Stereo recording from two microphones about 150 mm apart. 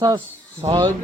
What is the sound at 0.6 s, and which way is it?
Speech, 20° right (ahead or behind).